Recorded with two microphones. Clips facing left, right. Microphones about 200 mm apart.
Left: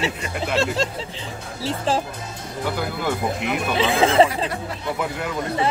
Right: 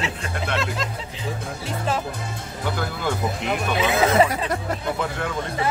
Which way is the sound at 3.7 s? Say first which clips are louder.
Left 2 dB; 30° left (ahead or behind).